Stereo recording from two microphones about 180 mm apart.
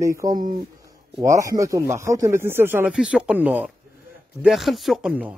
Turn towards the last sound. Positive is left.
turn(degrees=-5)  # may be behind; listen again after turning